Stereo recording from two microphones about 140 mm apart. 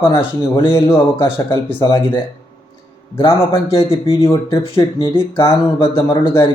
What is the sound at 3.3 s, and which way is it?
A man's voice, 20° left (ahead or behind).